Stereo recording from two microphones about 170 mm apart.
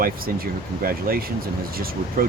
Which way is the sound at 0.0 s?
60° right (ahead or behind).